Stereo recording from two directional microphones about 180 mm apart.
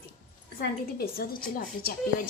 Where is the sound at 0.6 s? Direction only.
55° left (ahead or behind).